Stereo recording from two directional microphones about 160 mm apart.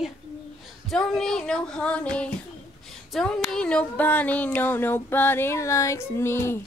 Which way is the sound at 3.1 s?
Centre (ahead or behind).